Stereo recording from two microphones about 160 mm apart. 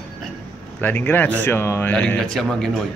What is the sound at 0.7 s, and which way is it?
A man's voice, 10° left (ahead or behind).